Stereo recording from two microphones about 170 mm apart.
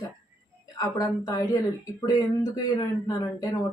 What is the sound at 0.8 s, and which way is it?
Speech, 20° left (ahead or behind).